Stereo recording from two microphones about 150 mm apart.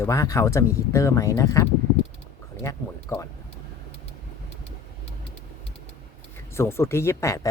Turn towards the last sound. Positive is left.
turn(degrees=20)  # may be behind; listen again after turning